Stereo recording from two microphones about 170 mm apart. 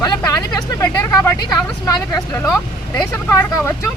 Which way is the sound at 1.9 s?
15° left (ahead or behind).